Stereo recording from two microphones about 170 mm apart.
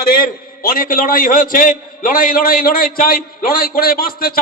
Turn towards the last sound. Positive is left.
turn(degrees=60)  # may be behind; listen again after turning